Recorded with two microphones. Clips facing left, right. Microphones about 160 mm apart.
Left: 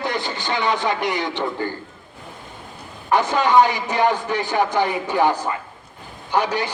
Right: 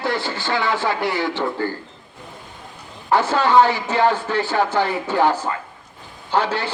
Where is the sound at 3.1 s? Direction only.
15° left (ahead or behind).